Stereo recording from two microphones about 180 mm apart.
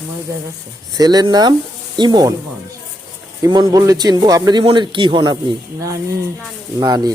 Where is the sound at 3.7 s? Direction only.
20° right (ahead or behind).